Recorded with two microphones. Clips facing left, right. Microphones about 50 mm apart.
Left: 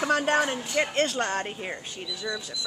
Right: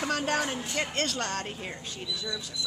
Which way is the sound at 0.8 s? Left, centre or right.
Centre.